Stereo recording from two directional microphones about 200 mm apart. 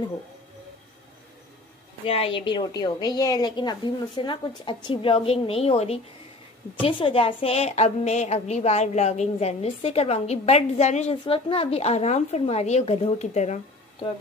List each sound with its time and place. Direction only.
2.0 s a woman's voice: 30° left (ahead or behind)